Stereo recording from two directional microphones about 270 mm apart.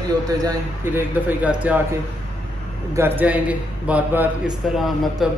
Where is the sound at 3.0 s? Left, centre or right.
Centre.